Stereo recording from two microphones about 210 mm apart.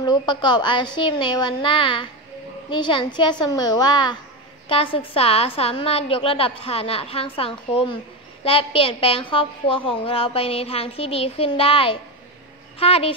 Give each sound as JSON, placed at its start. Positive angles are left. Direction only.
{"t": 0.0, "sound": "a woman's voice", "side_deg": 20}